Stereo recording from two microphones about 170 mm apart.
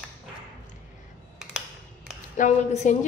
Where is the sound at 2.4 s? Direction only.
50° left (ahead or behind).